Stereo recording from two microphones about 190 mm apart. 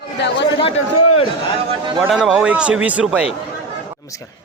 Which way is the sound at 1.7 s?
25° right (ahead or behind).